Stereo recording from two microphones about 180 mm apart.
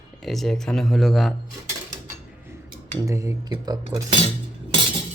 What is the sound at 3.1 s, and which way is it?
Speech, 15° right (ahead or behind).